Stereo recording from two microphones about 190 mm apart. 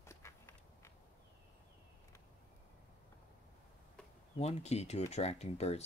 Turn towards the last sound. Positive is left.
turn(degrees=35)  # may be behind; listen again after turning